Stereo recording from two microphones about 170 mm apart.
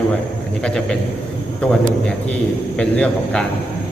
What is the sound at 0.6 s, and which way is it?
Speech, 5° left (ahead or behind).